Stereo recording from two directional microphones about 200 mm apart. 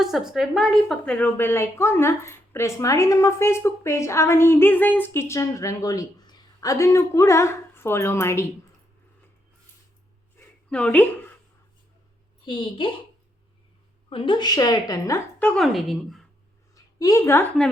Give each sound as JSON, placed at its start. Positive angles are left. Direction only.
{"t": 0.0, "sound": "a woman's voice", "side_deg": 0}
{"t": 10.7, "sound": "a woman's voice", "side_deg": 5}
{"t": 12.5, "sound": "a woman's voice", "side_deg": 25}
{"t": 14.1, "sound": "a woman's voice", "side_deg": 25}
{"t": 16.7, "sound": "a sound", "side_deg": 15}